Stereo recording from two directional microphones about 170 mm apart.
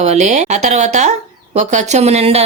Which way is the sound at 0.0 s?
40° right (ahead or behind).